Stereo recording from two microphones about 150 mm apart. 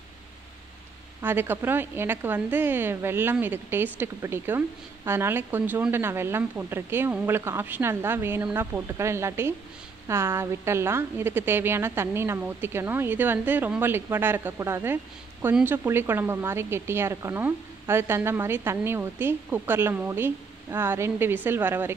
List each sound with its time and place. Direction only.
1.2 s a woman's voice: 15° right (ahead or behind)